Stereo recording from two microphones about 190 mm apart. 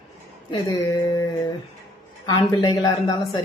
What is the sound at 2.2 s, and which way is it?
A woman's voice, 25° left (ahead or behind).